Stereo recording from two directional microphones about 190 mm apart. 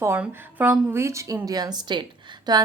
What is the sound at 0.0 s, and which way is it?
A woman's voice, 10° right (ahead or behind).